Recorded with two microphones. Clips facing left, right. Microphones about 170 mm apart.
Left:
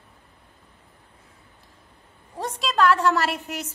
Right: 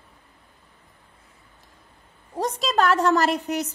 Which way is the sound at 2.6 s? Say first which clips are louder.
Left 1 dB; 40° right (ahead or behind).